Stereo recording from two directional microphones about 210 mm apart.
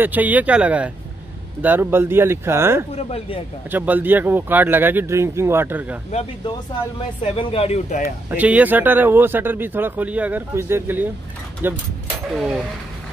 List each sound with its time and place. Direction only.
0.0 s speech: 10° right (ahead or behind)
2.9 s speech: 30° left (ahead or behind)
3.7 s speech: 10° right (ahead or behind)
7.2 s speech: 30° left (ahead or behind)
8.3 s speech: 5° right (ahead or behind)